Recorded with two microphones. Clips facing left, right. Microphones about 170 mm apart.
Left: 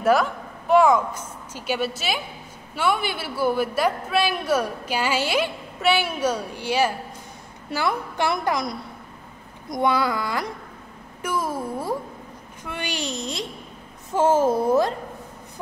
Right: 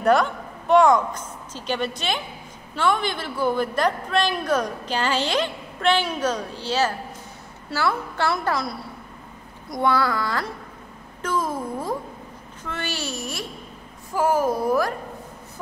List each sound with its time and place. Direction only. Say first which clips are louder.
0.0 s a woman's voice: right 1 dB; 5° left (ahead or behind); by 15.0 s 25° left (ahead or behind)